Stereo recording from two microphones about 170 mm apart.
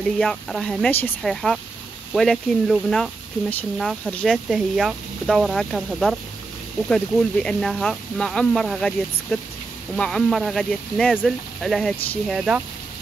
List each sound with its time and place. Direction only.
0.2 s speech: centre (ahead or behind)